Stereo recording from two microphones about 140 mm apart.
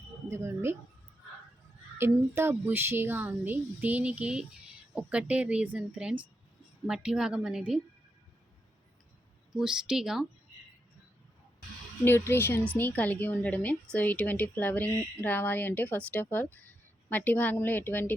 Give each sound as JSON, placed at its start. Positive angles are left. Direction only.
{"t": 0.3, "sound": "a woman's voice", "side_deg": -20}
{"t": 2.0, "sound": "a woman's voice", "side_deg": -15}
{"t": 9.5, "sound": "a woman's voice", "side_deg": -5}
{"t": 12.0, "sound": "a woman's voice", "side_deg": 15}